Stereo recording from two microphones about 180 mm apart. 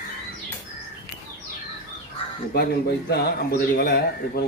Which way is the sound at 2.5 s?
65° left (ahead or behind).